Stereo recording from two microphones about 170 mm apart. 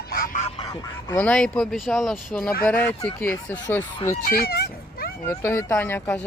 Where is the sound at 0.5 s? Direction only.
25° left (ahead or behind).